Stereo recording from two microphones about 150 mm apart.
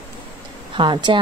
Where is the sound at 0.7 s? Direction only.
30° right (ahead or behind).